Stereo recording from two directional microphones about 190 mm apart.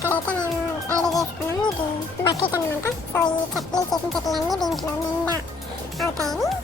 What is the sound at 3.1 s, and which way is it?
Speech, 20° left (ahead or behind).